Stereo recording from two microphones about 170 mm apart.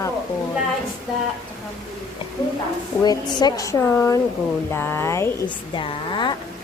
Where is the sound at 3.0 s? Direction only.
25° left (ahead or behind).